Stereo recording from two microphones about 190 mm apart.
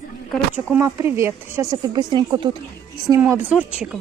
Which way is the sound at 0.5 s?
10° right (ahead or behind).